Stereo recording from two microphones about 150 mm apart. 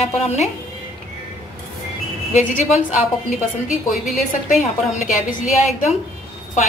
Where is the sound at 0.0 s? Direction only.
45° left (ahead or behind).